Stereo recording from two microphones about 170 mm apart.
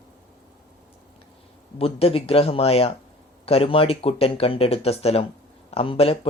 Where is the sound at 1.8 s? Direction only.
35° left (ahead or behind).